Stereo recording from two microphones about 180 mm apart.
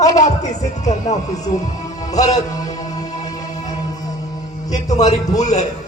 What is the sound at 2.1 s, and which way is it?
Speech, 20° left (ahead or behind).